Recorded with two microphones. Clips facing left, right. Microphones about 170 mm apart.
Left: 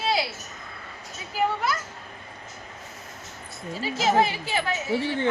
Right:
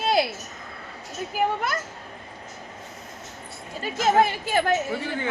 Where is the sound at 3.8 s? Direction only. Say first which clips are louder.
Right 2 dB; 50° right (ahead or behind).